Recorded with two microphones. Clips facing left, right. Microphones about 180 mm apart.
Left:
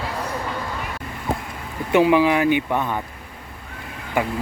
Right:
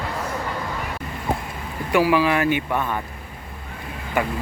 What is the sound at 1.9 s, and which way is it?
Speech, 20° left (ahead or behind).